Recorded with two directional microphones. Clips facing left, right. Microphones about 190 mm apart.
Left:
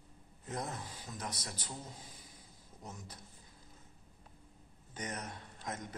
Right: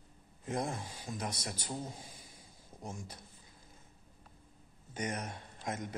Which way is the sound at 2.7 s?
25° right (ahead or behind).